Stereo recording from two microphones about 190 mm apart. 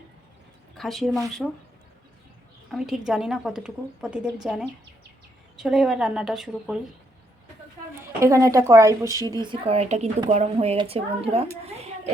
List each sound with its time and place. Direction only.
0.8 s a woman's voice: centre (ahead or behind)
2.7 s a woman's voice: centre (ahead or behind)
5.5 s a woman's voice: 5° right (ahead or behind)
8.2 s a woman's voice: 15° right (ahead or behind); by 11.9 s 35° right (ahead or behind)